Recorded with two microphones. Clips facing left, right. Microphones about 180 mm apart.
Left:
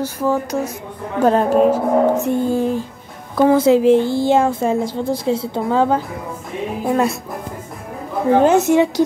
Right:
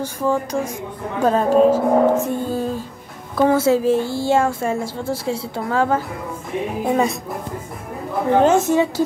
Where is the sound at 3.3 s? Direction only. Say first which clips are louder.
Left 3 dB; 15° left (ahead or behind).